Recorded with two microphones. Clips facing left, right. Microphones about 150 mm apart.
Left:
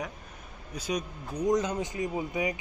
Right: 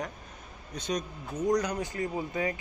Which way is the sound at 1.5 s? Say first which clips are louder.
Left 1 dB; 25° left (ahead or behind).